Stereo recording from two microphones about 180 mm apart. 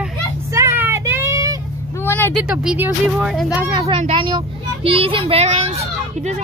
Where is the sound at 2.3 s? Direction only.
5° right (ahead or behind).